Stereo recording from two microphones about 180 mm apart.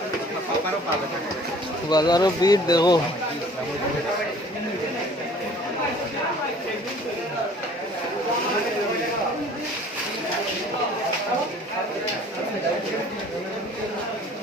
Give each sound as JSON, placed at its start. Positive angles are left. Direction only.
{"t": 1.9, "sound": "speech", "side_deg": 20}